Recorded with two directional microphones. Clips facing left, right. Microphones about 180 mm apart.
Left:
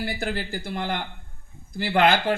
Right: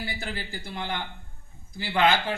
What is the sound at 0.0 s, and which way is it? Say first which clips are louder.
A man's voice: left 6 dB; 40° left (ahead or behind).